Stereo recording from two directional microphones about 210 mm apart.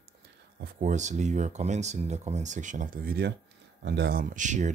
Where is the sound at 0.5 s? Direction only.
35° right (ahead or behind).